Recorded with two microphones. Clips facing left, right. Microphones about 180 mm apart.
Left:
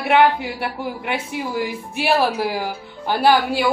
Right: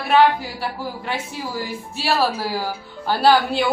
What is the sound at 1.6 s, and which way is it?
Speech, 15° left (ahead or behind).